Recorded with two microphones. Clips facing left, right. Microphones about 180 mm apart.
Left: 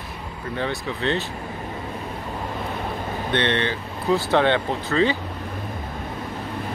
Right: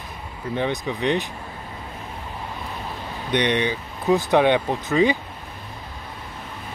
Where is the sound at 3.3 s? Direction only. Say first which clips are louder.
Right 2 dB; 15° right (ahead or behind).